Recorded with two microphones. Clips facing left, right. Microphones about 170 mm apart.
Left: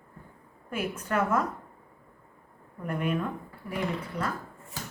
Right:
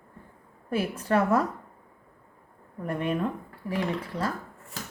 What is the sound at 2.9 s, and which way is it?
Speech, 30° right (ahead or behind).